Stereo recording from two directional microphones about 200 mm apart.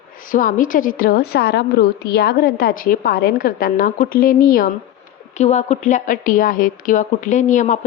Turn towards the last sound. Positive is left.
turn(degrees=40)  # may be behind; listen again after turning